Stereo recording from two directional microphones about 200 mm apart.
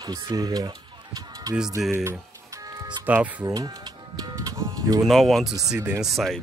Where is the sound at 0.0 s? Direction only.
20° right (ahead or behind).